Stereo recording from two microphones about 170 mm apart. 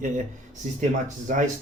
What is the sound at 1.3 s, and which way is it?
Speech, 45° right (ahead or behind).